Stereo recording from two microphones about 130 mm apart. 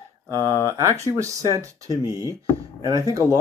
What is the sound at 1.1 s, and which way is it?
Speech, 25° right (ahead or behind).